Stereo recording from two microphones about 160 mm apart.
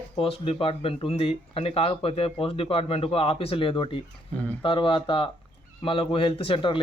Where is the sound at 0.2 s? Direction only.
35° left (ahead or behind).